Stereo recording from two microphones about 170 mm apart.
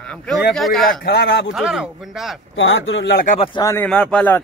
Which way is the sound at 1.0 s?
75° left (ahead or behind).